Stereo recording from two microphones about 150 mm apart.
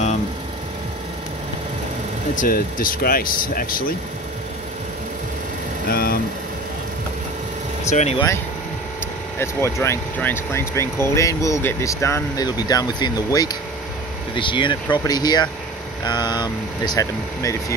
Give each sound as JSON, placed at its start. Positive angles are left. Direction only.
{"t": 2.3, "sound": "speech", "side_deg": 65}
{"t": 5.9, "sound": "speech", "side_deg": 85}
{"t": 7.9, "sound": "speech", "side_deg": 50}
{"t": 9.4, "sound": "speech", "side_deg": 20}